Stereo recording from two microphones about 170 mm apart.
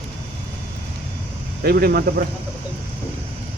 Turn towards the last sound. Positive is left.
turn(degrees=-60)  # may be behind; listen again after turning